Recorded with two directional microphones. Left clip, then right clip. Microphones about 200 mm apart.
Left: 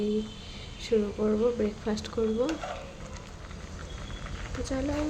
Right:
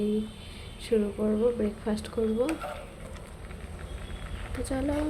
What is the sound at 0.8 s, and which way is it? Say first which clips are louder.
Speech: even; centre (ahead or behind).